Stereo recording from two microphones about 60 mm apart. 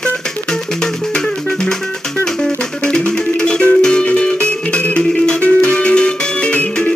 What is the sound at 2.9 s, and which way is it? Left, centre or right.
Music, centre.